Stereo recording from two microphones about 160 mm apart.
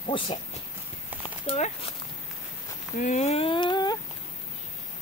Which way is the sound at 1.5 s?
45° left (ahead or behind).